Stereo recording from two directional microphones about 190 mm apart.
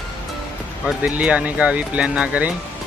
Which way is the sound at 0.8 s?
5° right (ahead or behind).